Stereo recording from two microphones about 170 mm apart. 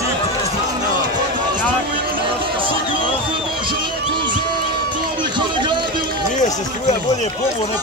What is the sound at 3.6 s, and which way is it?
Music, 30° right (ahead or behind).